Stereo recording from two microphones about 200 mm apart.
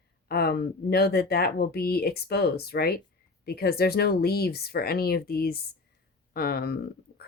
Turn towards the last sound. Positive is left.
turn(degrees=50)  # may be behind; listen again after turning